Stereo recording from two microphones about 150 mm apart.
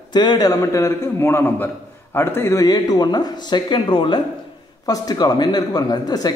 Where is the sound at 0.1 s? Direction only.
30° left (ahead or behind).